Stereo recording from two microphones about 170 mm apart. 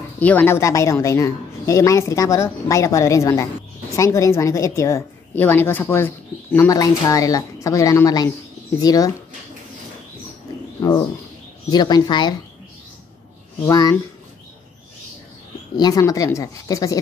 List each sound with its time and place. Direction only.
0.2 s a woman's voice: 10° left (ahead or behind)
11.7 s speech: 25° left (ahead or behind)
13.7 s speech: 20° left (ahead or behind)
15.7 s speech: 25° left (ahead or behind)